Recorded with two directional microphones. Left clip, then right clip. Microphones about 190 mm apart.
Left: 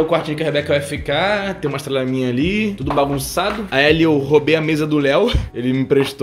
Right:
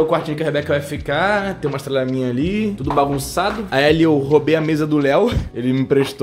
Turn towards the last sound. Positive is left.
turn(degrees=-10)  # may be behind; listen again after turning